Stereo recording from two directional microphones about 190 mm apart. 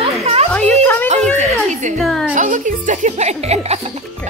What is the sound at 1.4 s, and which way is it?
Music, 40° right (ahead or behind).